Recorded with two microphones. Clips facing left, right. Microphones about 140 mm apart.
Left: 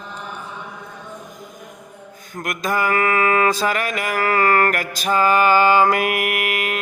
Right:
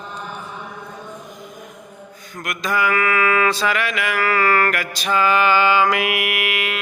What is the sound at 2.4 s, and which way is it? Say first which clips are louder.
Mantra: even; 45° left (ahead or behind).